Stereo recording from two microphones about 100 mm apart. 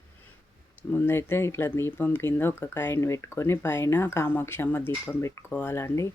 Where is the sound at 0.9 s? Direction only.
25° left (ahead or behind).